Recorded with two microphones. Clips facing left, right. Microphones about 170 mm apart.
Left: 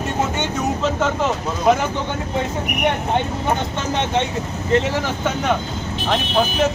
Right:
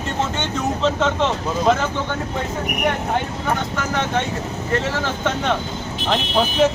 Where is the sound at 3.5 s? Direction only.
20° left (ahead or behind).